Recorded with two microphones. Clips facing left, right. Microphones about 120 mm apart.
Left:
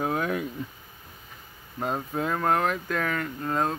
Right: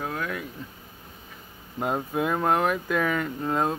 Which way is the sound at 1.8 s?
10° right (ahead or behind).